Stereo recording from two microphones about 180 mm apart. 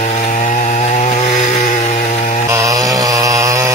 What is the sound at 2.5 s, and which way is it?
Chainsaw, 20° right (ahead or behind).